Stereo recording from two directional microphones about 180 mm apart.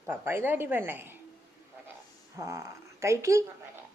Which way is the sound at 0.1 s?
10° right (ahead or behind).